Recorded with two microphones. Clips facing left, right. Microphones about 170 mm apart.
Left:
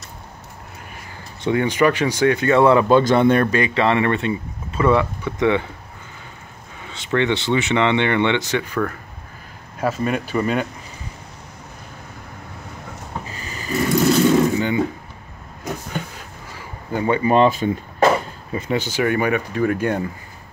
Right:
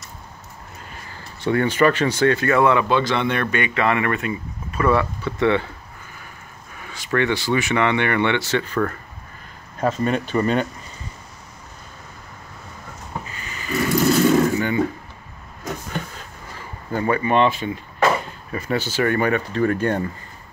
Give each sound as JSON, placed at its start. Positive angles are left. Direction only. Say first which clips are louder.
{"t": 1.4, "sound": "speech", "louder": "even", "side_deg": 15}
{"t": 3.0, "sound": "speech", "louder": "left 6 dB", "side_deg": 45}
{"t": 6.8, "sound": "speech", "louder": "left 1 dB", "side_deg": 20}
{"t": 13.3, "sound": "a sound", "louder": "left 2 dB", "side_deg": 35}
{"t": 14.3, "sound": "a sound", "louder": "left 1 dB", "side_deg": 15}
{"t": 17.2, "sound": "speech", "louder": "left 5 dB", "side_deg": 35}
{"t": 18.0, "sound": "speech", "louder": "left 3 dB", "side_deg": 20}